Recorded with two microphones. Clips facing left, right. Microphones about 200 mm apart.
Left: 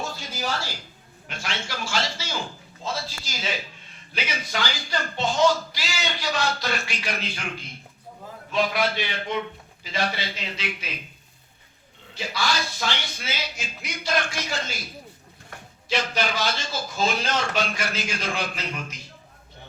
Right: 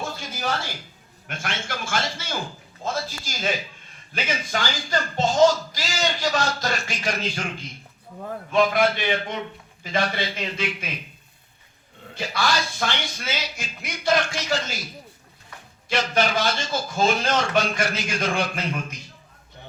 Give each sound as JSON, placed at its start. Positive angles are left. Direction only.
{"t": 0.2, "sound": "a sound", "side_deg": -55}
{"t": 1.3, "sound": "speech", "side_deg": -50}
{"t": 12.1, "sound": "speech", "side_deg": -55}
{"t": 13.6, "sound": "music", "side_deg": -55}
{"t": 16.1, "sound": "speech", "side_deg": -55}